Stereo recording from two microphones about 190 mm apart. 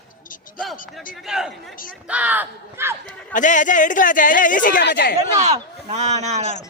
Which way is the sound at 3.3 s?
40° left (ahead or behind).